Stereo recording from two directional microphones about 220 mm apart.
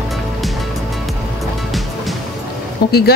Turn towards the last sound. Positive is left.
turn(degrees=45)  # may be behind; listen again after turning